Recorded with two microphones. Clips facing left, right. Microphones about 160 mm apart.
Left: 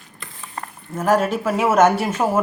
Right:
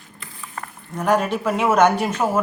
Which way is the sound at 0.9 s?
5° left (ahead or behind).